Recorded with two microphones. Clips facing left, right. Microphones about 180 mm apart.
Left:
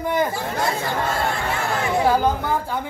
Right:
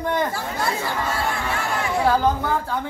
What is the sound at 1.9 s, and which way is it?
Speech, 15° left (ahead or behind).